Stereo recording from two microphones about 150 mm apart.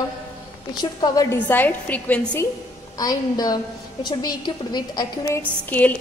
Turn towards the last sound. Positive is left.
turn(degrees=10)  # may be behind; listen again after turning